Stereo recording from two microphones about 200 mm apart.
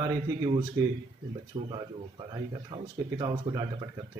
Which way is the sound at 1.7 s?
20° right (ahead or behind).